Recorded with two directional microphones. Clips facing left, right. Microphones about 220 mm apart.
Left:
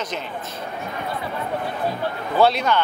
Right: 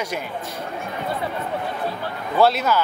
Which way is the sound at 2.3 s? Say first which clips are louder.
Even; centre (ahead or behind).